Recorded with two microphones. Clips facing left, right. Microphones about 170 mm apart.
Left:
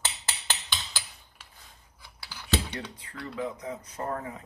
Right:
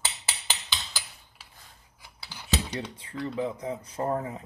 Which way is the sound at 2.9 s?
25° right (ahead or behind).